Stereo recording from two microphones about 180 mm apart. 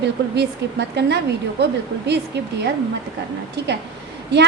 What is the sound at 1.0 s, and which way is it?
A woman's voice, 70° right (ahead or behind).